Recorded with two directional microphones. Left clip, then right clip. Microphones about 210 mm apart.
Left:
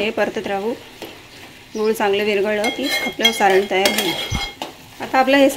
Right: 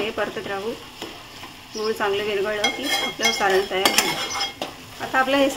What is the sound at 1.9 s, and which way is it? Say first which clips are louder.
Speech: left 5 dB; 35° left (ahead or behind).